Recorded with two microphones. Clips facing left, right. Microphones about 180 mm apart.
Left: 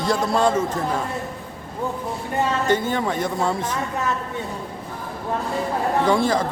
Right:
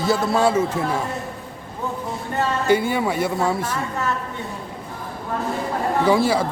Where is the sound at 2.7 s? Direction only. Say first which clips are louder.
Right 2 dB; 10° right (ahead or behind).